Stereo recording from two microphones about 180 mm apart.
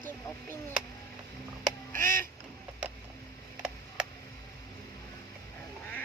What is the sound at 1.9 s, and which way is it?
Duck, 15° left (ahead or behind).